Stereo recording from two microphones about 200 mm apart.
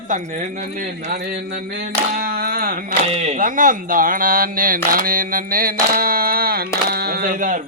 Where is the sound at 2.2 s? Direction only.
45° right (ahead or behind).